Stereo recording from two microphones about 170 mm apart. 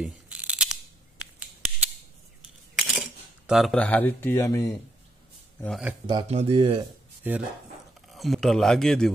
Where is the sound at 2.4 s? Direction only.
5° right (ahead or behind).